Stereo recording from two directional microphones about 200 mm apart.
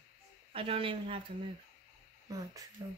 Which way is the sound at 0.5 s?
30° right (ahead or behind).